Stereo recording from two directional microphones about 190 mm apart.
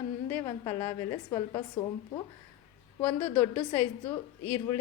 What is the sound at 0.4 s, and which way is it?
A woman's voice, 20° left (ahead or behind).